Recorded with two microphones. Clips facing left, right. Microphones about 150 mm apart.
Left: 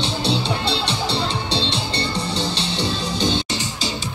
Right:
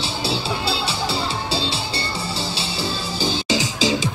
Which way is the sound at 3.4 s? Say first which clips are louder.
Right 6 dB; 90° right.